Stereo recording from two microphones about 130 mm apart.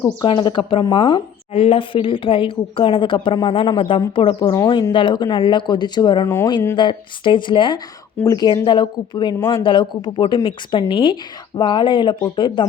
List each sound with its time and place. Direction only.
0.2 s a woman's voice: 35° left (ahead or behind)
0.9 s a woman's voice: 45° left (ahead or behind)
6.2 s speech: 20° left (ahead or behind)
6.7 s a woman's voice: 40° left (ahead or behind)